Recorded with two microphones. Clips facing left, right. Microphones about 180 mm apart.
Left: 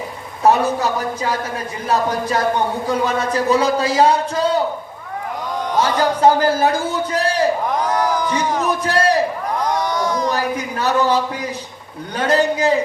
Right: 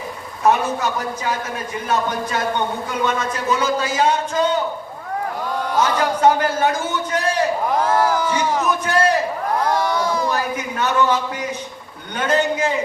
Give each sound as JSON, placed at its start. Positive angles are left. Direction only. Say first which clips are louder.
{"t": 0.4, "sound": "speech", "louder": "left 3 dB", "side_deg": 35}
{"t": 5.8, "sound": "speech", "louder": "left 2 dB", "side_deg": 35}
{"t": 7.9, "sound": "a sound", "louder": "right 1 dB", "side_deg": 15}
{"t": 8.8, "sound": "speech", "louder": "left 2 dB", "side_deg": 35}
{"t": 10.5, "sound": "speech", "louder": "left 2 dB", "side_deg": 35}